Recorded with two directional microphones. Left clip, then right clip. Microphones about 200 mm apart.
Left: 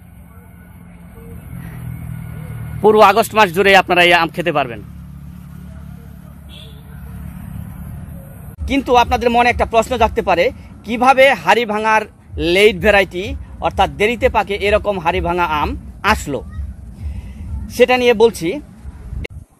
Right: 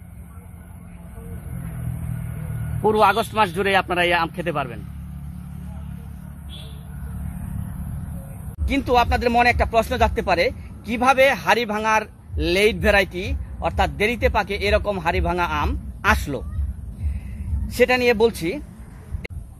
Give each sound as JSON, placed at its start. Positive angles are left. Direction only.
{"t": 2.8, "sound": "speech", "side_deg": 55}
{"t": 8.6, "sound": "speech", "side_deg": 35}
{"t": 17.6, "sound": "speech", "side_deg": 35}